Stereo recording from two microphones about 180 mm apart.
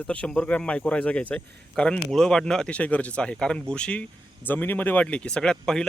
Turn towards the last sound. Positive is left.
turn(degrees=5)  # may be behind; listen again after turning